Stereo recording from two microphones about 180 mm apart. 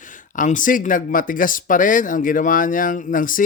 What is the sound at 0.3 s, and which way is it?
Speech, 45° left (ahead or behind).